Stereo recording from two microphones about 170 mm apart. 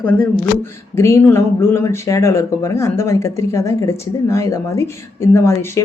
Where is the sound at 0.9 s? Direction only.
15° left (ahead or behind).